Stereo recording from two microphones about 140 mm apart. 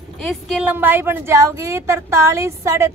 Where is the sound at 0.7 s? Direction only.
15° right (ahead or behind).